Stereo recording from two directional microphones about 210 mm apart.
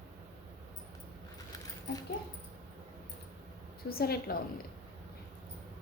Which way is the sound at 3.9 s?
45° left (ahead or behind).